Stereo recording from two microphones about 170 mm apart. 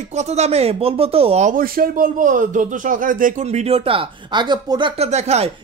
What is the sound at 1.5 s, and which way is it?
Speech, 60° right (ahead or behind).